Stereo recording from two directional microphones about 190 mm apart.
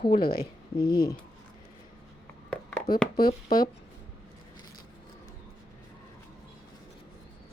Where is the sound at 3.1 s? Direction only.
50° left (ahead or behind).